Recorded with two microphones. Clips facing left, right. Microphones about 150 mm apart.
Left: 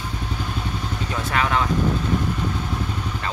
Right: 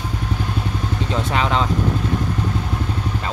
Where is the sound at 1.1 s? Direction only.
20° right (ahead or behind).